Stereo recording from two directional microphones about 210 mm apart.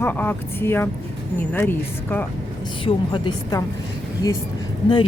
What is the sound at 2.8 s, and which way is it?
Speech, 20° left (ahead or behind).